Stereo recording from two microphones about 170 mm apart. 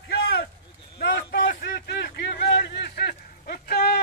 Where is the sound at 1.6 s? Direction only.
80° left; by 4.0 s 60° left (ahead or behind).